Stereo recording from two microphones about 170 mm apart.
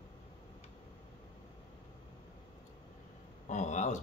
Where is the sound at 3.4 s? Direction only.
45° left (ahead or behind).